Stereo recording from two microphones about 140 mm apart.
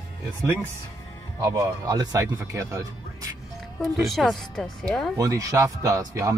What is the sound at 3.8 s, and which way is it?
Speech, centre (ahead or behind).